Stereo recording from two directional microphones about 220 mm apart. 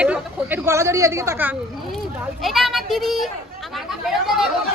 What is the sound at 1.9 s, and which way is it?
Speech, centre (ahead or behind).